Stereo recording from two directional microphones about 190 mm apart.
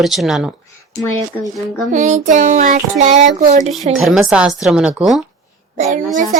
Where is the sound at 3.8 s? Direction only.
Centre (ahead or behind).